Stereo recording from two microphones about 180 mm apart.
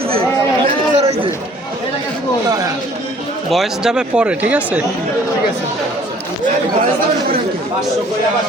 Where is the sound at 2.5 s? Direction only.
20° right (ahead or behind).